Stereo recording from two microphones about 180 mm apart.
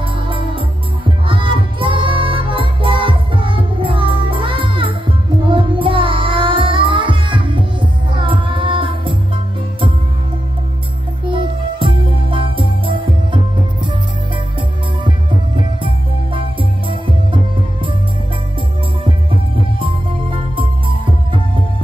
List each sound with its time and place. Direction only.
0.0 s music: 30° right (ahead or behind)
11.2 s music: 25° right (ahead or behind)
15.0 s music: 25° right (ahead or behind)
16.9 s music: 30° right (ahead or behind)
19.0 s music: 30° right (ahead or behind)